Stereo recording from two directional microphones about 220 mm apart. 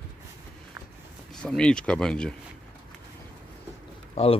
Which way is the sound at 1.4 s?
5° left (ahead or behind).